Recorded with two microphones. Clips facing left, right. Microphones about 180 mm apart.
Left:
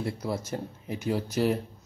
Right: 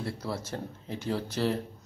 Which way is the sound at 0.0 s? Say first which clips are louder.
Left 3 dB; 15° left (ahead or behind).